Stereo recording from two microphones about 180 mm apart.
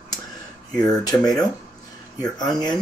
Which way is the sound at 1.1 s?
20° left (ahead or behind).